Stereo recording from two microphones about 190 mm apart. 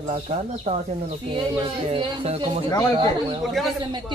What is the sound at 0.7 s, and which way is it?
Speech, 30° right (ahead or behind).